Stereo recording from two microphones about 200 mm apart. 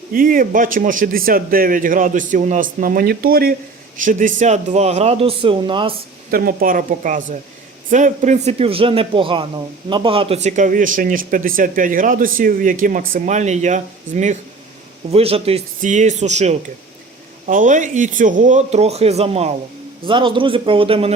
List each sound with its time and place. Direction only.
0.1 s a man's voice: 45° right (ahead or behind); by 5.9 s 25° right (ahead or behind)
6.3 s a man's voice: 45° right (ahead or behind); by 21.1 s 25° right (ahead or behind)